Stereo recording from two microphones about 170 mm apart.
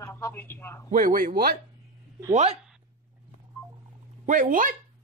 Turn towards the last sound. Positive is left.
turn(degrees=-50)  # may be behind; listen again after turning